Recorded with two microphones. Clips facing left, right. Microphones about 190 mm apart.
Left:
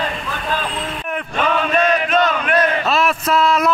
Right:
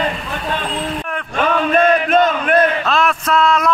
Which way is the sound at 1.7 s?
50° right (ahead or behind).